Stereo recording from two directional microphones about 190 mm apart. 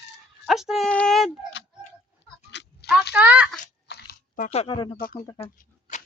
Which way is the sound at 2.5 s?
65° left (ahead or behind).